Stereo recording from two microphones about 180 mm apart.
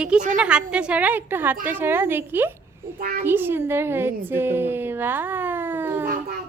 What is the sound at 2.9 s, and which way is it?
Speech, 55° right (ahead or behind).